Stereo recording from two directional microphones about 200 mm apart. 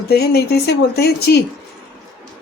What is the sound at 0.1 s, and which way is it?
Speech, 55° left (ahead or behind).